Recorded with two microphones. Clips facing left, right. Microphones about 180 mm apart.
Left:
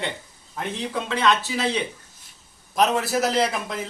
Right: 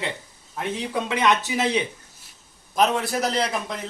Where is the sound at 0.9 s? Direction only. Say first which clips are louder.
Even; 15° right (ahead or behind).